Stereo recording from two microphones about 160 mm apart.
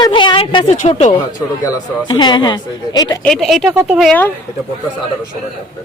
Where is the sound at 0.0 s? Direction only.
30° left (ahead or behind).